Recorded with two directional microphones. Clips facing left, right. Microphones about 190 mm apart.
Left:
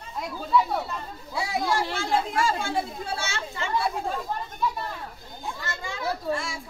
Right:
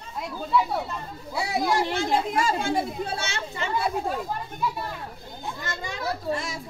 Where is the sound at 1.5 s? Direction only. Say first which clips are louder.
Right 3 dB; 20° right (ahead or behind).